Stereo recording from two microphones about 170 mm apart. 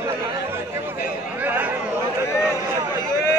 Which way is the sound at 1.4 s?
10° right (ahead or behind).